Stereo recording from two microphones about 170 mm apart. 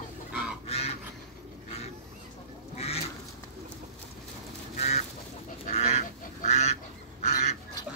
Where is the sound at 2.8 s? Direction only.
35° left (ahead or behind).